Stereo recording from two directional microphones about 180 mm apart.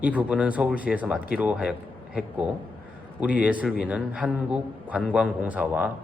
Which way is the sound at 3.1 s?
10° right (ahead or behind).